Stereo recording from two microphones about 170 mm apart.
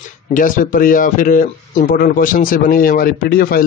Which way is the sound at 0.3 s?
50° left (ahead or behind).